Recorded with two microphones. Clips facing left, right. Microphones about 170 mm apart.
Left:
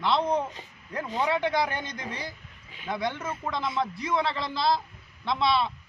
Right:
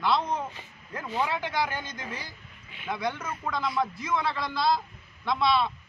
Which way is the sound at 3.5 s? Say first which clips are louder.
Right 1 dB; 25° left (ahead or behind).